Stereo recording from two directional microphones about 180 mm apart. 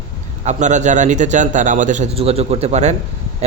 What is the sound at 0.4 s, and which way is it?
A man's voice, 40° right (ahead or behind).